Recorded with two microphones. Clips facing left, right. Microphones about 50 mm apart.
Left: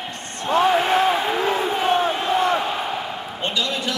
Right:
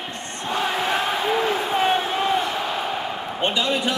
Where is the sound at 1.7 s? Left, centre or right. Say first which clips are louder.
Left 1 dB; centre.